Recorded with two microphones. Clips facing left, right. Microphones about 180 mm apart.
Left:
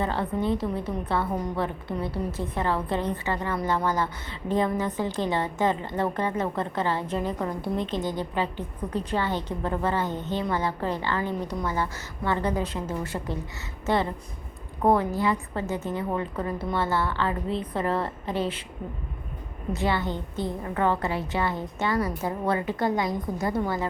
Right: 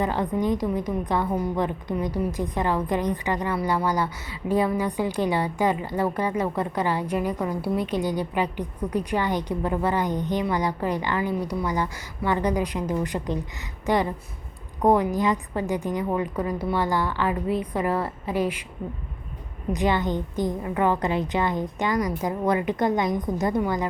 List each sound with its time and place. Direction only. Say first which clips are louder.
0.0 s a woman's voice: right 3 dB; 15° right (ahead or behind)
19.7 s a woman's voice: right 3 dB; 15° right (ahead or behind)